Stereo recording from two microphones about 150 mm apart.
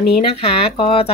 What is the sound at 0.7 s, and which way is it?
Speech, 35° left (ahead or behind).